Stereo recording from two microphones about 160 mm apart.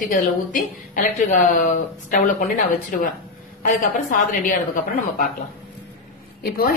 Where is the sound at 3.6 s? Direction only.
60° left (ahead or behind).